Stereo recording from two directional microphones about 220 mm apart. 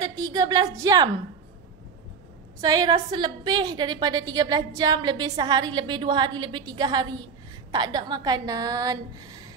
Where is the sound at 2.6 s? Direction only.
15° right (ahead or behind).